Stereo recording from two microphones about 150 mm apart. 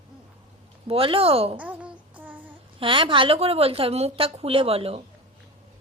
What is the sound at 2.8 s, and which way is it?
Speech, 35° right (ahead or behind).